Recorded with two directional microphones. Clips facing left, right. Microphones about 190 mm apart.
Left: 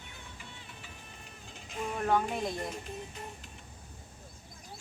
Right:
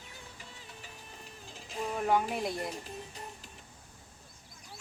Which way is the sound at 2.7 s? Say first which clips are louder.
Left 1 dB; 35° right (ahead or behind).